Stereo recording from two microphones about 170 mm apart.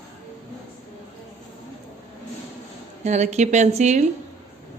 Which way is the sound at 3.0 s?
45° right (ahead or behind).